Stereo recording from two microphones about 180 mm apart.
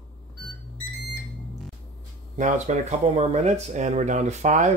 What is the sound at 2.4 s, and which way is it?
Speech, 40° right (ahead or behind).